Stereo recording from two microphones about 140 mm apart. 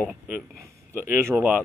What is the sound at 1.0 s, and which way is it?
Speech, 20° right (ahead or behind).